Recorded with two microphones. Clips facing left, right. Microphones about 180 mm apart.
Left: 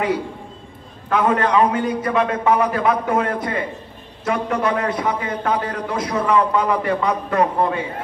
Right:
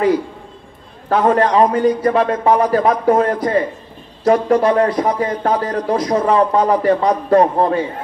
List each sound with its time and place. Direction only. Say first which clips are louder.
1.0 s a man's voice: right 4 dB; 35° right (ahead or behind)